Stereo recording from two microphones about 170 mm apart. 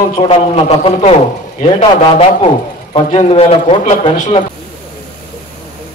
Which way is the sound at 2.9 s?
35° left (ahead or behind).